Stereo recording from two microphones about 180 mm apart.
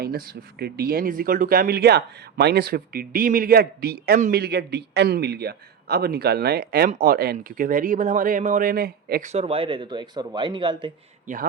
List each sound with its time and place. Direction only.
0.6 s a man's voice: 55° right (ahead or behind)
9.2 s a man's voice: 35° right (ahead or behind)